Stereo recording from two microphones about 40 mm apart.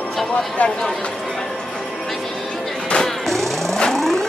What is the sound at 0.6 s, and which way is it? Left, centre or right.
Speech, left.